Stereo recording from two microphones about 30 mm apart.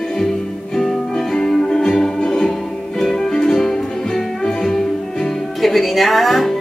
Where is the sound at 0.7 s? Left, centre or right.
Centre.